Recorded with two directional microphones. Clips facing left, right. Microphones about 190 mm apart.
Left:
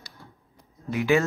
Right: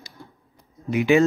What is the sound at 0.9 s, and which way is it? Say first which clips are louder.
Speech: right 5 dB; 20° right (ahead or behind).